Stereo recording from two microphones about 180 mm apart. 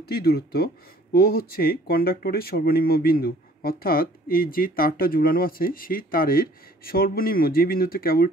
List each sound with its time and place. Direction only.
0.0 s speech: 60° left (ahead or behind)